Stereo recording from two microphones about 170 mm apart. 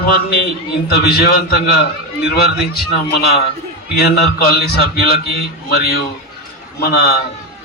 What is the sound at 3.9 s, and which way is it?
A man's voice, 65° left (ahead or behind).